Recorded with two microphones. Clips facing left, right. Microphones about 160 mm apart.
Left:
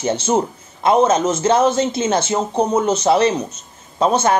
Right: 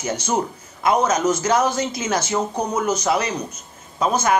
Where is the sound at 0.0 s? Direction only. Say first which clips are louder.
Left 5 dB; 25° left (ahead or behind).